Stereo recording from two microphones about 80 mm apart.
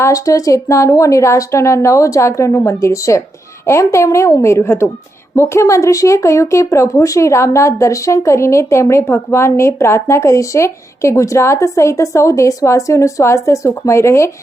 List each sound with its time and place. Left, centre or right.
0.0 s speech: left